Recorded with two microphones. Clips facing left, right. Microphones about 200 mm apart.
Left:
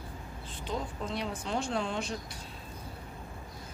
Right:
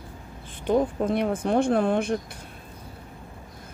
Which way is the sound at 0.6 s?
60° right (ahead or behind).